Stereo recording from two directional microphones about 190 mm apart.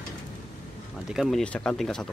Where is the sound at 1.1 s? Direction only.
Centre (ahead or behind).